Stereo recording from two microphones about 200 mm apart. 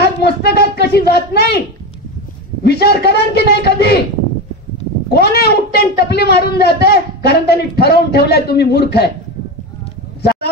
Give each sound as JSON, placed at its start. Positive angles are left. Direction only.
{"t": 0.0, "sound": "a sound", "side_deg": 55}
{"t": 2.6, "sound": "a man's voice", "side_deg": 55}
{"t": 5.1, "sound": "speech", "side_deg": 55}